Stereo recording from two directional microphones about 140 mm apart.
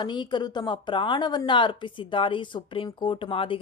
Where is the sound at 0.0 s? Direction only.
35° left (ahead or behind).